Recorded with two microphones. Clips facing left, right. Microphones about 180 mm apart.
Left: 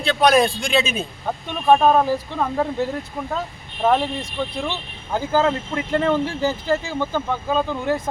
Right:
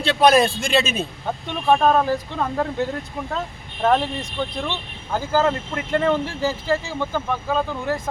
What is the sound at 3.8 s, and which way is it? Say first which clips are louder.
Speech: even; 10° left (ahead or behind).